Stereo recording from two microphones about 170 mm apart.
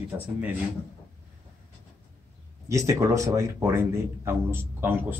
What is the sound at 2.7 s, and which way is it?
Speech, 20° right (ahead or behind).